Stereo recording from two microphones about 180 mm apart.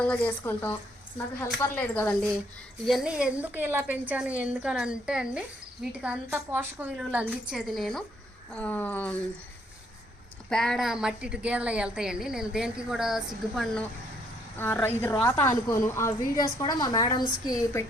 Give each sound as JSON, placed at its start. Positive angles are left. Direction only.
{"t": 0.0, "sound": "a woman's voice", "side_deg": 10}
{"t": 10.5, "sound": "a woman's voice", "side_deg": 0}
{"t": 14.6, "sound": "a woman's voice", "side_deg": 10}